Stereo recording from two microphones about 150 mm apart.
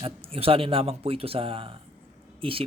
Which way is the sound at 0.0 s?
40° right (ahead or behind).